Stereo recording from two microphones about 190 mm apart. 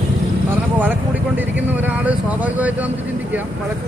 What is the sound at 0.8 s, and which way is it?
Speech, 10° right (ahead or behind).